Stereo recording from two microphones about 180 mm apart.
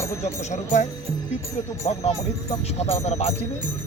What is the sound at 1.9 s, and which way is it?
Speech, 35° left (ahead or behind).